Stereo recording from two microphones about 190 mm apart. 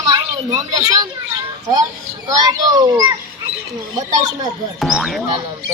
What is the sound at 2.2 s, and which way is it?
Speech, 20° right (ahead or behind).